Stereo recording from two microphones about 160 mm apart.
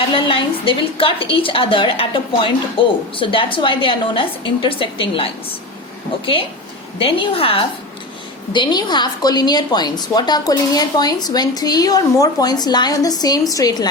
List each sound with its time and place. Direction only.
0.1 s a woman's voice: 35° left (ahead or behind)
7.0 s a woman's voice: 35° left (ahead or behind)